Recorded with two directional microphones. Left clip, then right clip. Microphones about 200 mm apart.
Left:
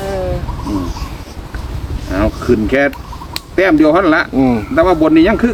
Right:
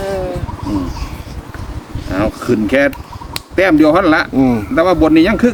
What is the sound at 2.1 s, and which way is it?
Speech, 50° right (ahead or behind).